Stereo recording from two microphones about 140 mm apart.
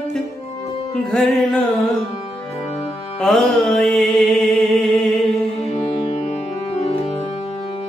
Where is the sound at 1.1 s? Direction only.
5° left (ahead or behind).